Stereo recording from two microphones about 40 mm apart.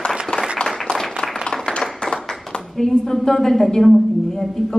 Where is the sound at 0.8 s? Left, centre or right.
Centre.